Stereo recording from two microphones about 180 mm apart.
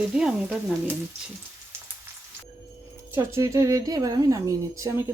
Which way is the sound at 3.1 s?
15° right (ahead or behind).